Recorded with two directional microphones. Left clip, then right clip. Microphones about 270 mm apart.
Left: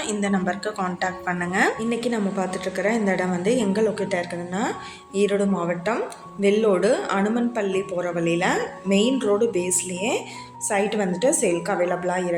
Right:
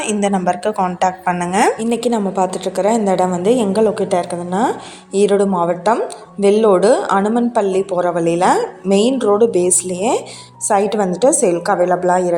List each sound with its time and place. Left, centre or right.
0.0 s a woman's voice: right